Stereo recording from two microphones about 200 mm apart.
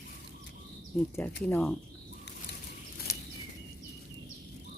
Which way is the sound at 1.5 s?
10° left (ahead or behind).